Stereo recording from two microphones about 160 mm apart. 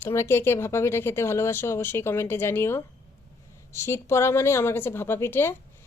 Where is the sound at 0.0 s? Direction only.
15° left (ahead or behind).